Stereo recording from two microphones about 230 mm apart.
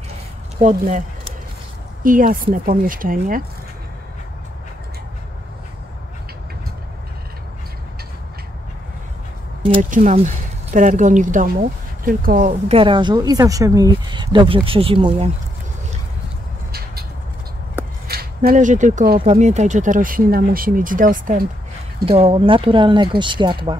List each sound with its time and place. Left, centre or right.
0.6 s speech: right
2.0 s speech: right
9.7 s a woman's voice: right
18.0 s speech: right
22.0 s a woman's voice: right